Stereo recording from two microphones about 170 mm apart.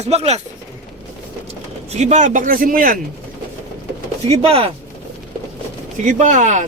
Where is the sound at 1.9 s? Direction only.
40° right (ahead or behind).